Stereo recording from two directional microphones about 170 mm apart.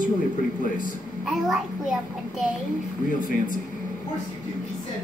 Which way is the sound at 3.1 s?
55° left (ahead or behind).